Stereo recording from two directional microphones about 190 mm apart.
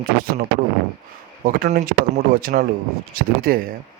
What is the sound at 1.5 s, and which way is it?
A man's voice, 45° right (ahead or behind).